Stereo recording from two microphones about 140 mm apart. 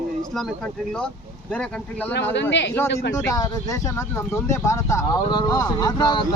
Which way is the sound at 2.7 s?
20° left (ahead or behind).